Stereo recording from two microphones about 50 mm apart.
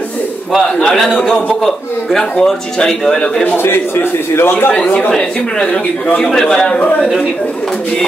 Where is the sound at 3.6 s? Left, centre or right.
Left.